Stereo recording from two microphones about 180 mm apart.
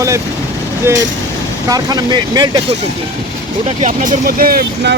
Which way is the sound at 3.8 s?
55° right (ahead or behind).